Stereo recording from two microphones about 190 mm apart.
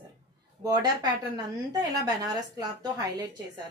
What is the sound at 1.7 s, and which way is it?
A woman's voice, 20° right (ahead or behind).